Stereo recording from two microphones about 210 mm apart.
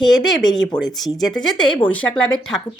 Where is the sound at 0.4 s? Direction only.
20° left (ahead or behind).